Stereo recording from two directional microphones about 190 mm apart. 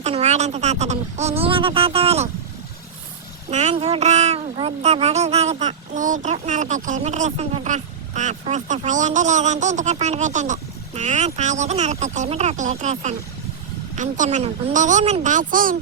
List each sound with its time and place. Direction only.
0.0 s speech: 35° right (ahead or behind)
3.5 s speech: 35° right (ahead or behind)